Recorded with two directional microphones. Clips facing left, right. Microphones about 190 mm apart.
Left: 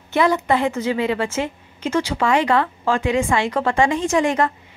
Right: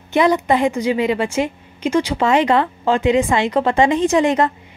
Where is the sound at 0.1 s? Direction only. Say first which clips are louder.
Right 3 dB; 15° right (ahead or behind).